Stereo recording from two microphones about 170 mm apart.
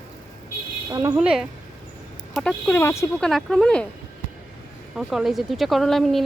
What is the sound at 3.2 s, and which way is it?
Speech, 5° left (ahead or behind).